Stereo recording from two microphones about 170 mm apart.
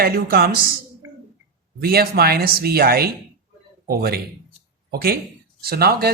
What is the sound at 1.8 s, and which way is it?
A woman's voice, 65° right (ahead or behind).